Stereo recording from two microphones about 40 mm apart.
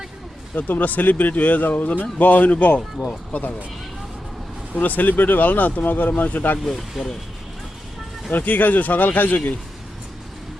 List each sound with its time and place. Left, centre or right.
0.5 s speech: left
4.7 s speech: left
6.7 s speech: centre
8.3 s speech: left